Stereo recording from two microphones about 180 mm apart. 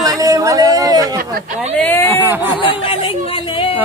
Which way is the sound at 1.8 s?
10° left (ahead or behind).